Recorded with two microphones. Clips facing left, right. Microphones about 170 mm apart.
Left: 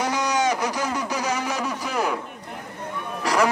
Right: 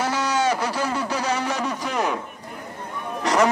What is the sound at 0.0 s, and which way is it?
Speech, 15° left (ahead or behind).